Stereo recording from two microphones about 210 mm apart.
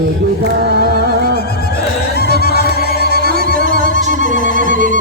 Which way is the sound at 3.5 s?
40° right (ahead or behind).